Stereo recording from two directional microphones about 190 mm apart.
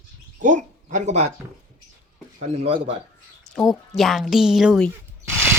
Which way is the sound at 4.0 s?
Centre (ahead or behind).